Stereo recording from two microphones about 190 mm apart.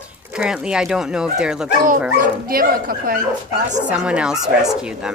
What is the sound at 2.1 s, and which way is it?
Speech, 50° right (ahead or behind).